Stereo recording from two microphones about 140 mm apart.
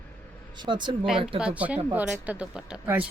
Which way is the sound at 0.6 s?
35° right (ahead or behind).